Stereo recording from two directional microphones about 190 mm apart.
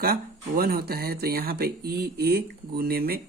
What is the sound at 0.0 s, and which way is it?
A man's voice, 50° right (ahead or behind).